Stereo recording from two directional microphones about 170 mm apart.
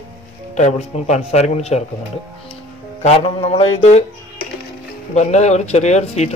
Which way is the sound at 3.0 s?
35° left (ahead or behind).